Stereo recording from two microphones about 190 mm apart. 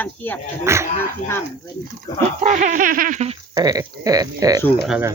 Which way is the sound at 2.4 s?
40° right (ahead or behind).